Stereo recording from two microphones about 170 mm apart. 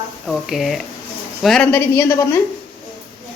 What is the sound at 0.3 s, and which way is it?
A woman's voice, centre (ahead or behind).